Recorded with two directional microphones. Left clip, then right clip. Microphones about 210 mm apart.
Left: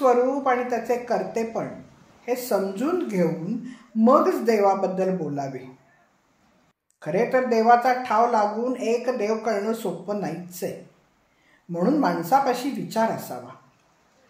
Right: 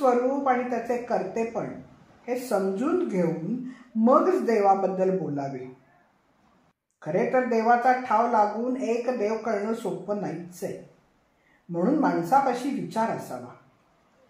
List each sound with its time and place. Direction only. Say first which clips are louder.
0.0 s a woman's voice: left 3 dB; 35° left (ahead or behind)
7.0 s a woman's voice: left 2 dB; 40° left (ahead or behind)
11.7 s a woman's voice: left 2 dB; 35° left (ahead or behind)